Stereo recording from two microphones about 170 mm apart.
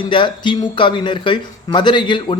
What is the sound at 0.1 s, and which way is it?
A man's voice, 30° left (ahead or behind).